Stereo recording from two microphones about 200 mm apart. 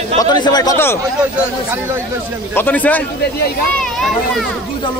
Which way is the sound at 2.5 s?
10° left (ahead or behind).